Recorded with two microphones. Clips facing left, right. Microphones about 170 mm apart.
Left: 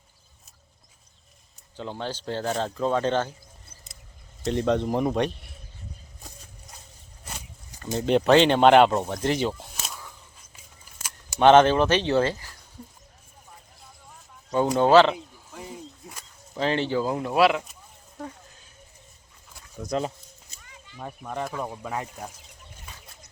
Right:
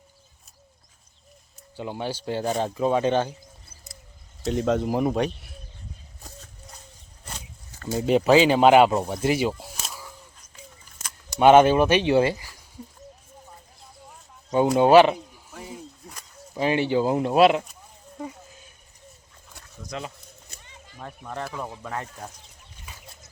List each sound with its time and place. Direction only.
1.7 s speech: 10° right (ahead or behind)
4.4 s speech: centre (ahead or behind)
7.3 s a sound: 10° left (ahead or behind)
7.9 s speech: 5° right (ahead or behind)
9.8 s a sound: 5° right (ahead or behind)
11.3 s speech: 10° right (ahead or behind)
14.5 s speech: 15° right (ahead or behind)
16.6 s speech: 10° right (ahead or behind)
17.0 s speech: 25° right (ahead or behind)
19.9 s speech: 40° left (ahead or behind)
21.0 s speech: 5° left (ahead or behind)